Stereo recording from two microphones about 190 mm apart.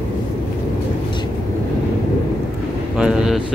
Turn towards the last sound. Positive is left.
turn(degrees=-5)  # may be behind; listen again after turning